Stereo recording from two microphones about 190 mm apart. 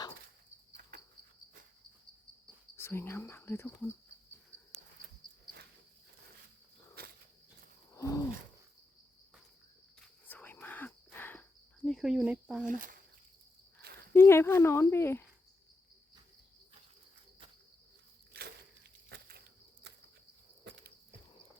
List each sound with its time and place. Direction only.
0.7 s cricket: 50° right (ahead or behind)
2.7 s speech: 10° left (ahead or behind)
7.0 s insect: 55° right (ahead or behind)
7.9 s wild animals: 15° left (ahead or behind)
10.2 s whispering: 10° left (ahead or behind)
11.9 s speech: centre (ahead or behind)
12.6 s speech: 45° right (ahead or behind)
14.1 s speech: 15° left (ahead or behind)
18.3 s a sound: 55° right (ahead or behind)